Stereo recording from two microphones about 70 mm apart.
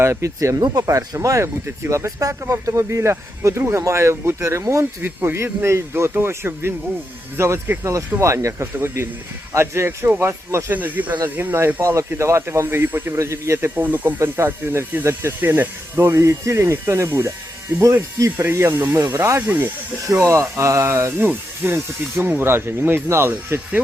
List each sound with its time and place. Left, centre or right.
0.0 s speech: right
0.6 s speech: right
1.6 s speech: right
5.0 s speech: right
8.6 s speech: right
10.8 s speech: right
13.1 s speech: right
13.7 s speech: right
18.3 s speech: right
19.4 s speech: right
20.1 s speech: right